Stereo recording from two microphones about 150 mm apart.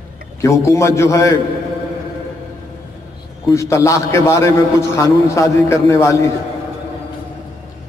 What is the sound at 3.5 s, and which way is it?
A man's voice, 20° left (ahead or behind).